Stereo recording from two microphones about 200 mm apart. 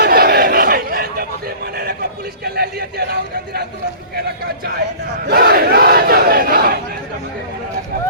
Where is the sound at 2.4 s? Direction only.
50° right (ahead or behind).